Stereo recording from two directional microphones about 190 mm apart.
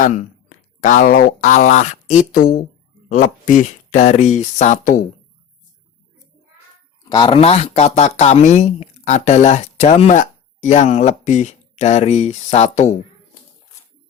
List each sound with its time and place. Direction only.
0.0 s speech: 40° left (ahead or behind)
7.1 s speech: 25° left (ahead or behind)